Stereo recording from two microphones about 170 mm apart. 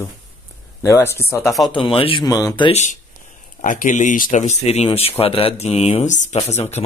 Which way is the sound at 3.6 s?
50° left (ahead or behind).